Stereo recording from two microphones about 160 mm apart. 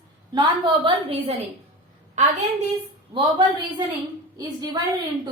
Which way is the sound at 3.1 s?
30° right (ahead or behind).